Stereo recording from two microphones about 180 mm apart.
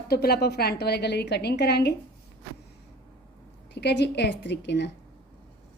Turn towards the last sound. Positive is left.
turn(degrees=70)  # may be behind; listen again after turning